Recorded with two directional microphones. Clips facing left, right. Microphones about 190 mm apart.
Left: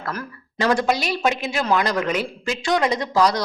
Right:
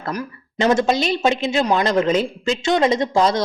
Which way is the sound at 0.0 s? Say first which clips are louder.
Right 4 dB; 20° right (ahead or behind).